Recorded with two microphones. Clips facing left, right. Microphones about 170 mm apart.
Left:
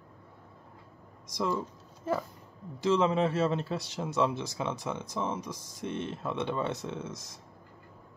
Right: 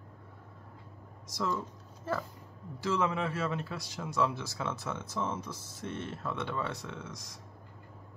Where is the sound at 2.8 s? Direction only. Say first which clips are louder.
Left 5 dB; 20° left (ahead or behind).